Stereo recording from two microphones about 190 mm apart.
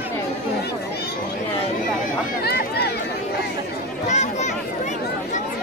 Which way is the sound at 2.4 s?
55° left (ahead or behind).